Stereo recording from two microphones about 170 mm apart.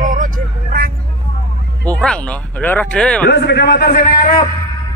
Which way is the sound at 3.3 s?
75° left (ahead or behind).